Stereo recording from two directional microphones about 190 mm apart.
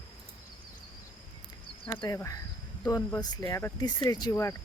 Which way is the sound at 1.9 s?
15° left (ahead or behind).